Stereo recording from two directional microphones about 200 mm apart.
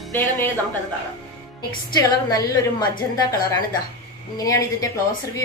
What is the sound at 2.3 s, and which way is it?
A woman's voice, 20° left (ahead or behind).